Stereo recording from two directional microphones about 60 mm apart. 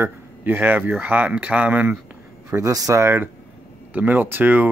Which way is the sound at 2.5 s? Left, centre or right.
Right.